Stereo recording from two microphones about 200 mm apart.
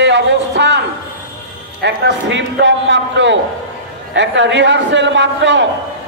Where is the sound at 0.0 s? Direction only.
60° right (ahead or behind).